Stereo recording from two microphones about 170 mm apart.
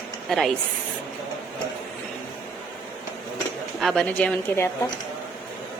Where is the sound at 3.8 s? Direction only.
Centre (ahead or behind).